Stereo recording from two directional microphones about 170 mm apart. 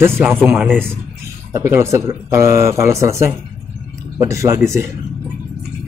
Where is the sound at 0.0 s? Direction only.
15° right (ahead or behind).